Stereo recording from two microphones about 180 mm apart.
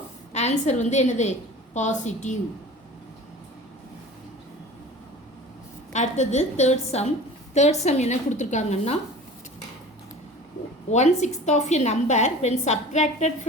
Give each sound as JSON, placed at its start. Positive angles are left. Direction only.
{"t": 0.3, "sound": "a woman's voice", "side_deg": 40}
{"t": 5.9, "sound": "a woman's voice", "side_deg": 40}
{"t": 10.9, "sound": "a woman's voice", "side_deg": 40}